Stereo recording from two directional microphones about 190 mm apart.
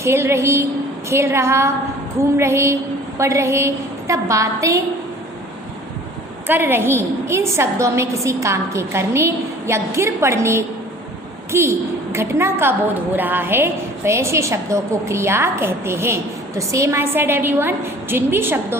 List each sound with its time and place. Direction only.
0.0 s a woman's voice: 15° right (ahead or behind)
6.5 s a woman's voice: 10° right (ahead or behind)